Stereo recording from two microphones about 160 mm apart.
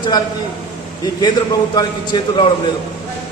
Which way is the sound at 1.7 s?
25° left (ahead or behind).